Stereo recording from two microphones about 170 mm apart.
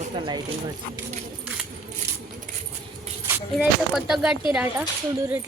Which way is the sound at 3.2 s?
10° right (ahead or behind).